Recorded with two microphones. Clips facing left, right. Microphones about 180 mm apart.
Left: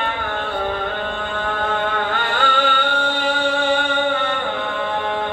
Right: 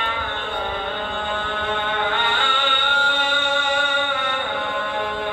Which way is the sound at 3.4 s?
30° left (ahead or behind).